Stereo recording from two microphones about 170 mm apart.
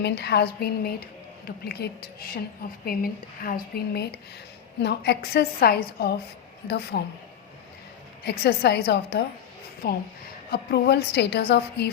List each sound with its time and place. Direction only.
0.0 s a woman's voice: 75° left (ahead or behind)
4.8 s a woman's voice: 80° left
8.2 s a woman's voice: 75° left (ahead or behind)
9.8 s a woman's voice: 65° left (ahead or behind)